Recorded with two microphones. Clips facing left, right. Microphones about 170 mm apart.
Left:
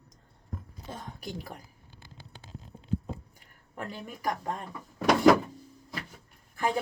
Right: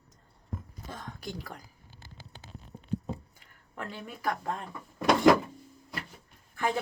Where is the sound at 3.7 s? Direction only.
35° left (ahead or behind).